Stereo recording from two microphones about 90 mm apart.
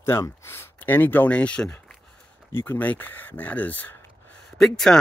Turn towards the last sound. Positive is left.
turn(degrees=5)  # may be behind; listen again after turning